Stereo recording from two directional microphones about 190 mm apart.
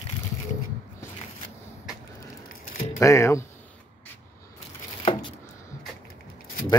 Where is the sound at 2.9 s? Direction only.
15° left (ahead or behind).